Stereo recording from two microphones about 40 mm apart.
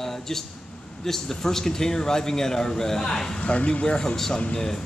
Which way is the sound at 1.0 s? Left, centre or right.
Centre.